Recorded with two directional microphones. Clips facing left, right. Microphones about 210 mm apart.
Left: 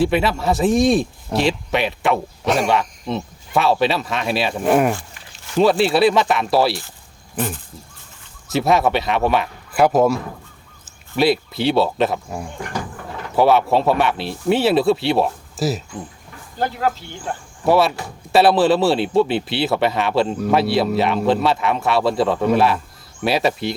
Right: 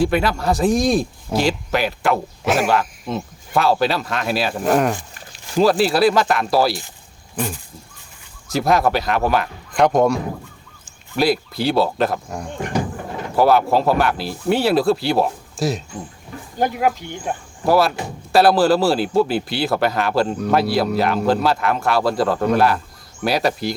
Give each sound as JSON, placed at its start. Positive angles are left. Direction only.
{"t": 0.0, "sound": "speech", "side_deg": 0}
{"t": 7.3, "sound": "speech", "side_deg": -10}
{"t": 8.5, "sound": "speech", "side_deg": 0}
{"t": 12.5, "sound": "a sound", "side_deg": -20}
{"t": 13.3, "sound": "speech", "side_deg": 0}
{"t": 16.6, "sound": "speech", "side_deg": -15}
{"t": 17.7, "sound": "speech", "side_deg": 0}